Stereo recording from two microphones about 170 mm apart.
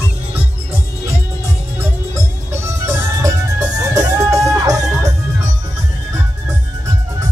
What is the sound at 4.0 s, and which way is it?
Music, 15° right (ahead or behind).